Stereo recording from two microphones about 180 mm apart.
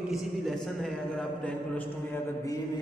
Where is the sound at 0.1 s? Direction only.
Centre (ahead or behind).